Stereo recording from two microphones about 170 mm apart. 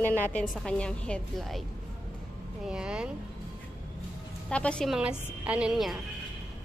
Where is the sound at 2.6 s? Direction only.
5° right (ahead or behind).